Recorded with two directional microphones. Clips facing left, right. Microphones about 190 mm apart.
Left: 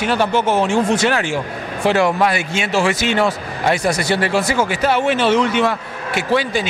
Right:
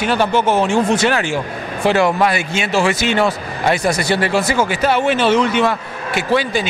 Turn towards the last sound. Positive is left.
turn(degrees=-20)  # may be behind; listen again after turning